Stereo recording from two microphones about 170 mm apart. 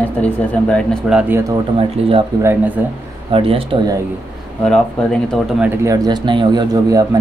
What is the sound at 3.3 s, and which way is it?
Speech, 35° right (ahead or behind).